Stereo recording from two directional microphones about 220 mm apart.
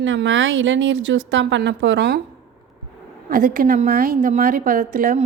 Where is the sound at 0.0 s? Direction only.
60° right (ahead or behind).